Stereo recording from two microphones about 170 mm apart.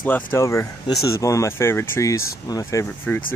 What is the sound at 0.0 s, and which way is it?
Speech, 10° left (ahead or behind).